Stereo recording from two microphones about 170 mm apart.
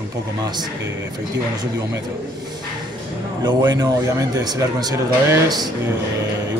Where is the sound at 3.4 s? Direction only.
25° right (ahead or behind).